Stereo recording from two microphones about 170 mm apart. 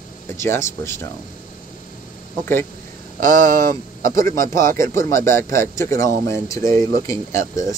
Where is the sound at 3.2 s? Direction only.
55° right (ahead or behind).